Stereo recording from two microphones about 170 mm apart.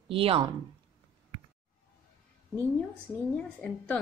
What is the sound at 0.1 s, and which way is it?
Speech, 35° right (ahead or behind).